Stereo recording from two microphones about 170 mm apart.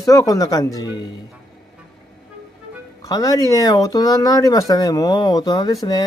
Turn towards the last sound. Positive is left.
turn(degrees=20)  # may be behind; listen again after turning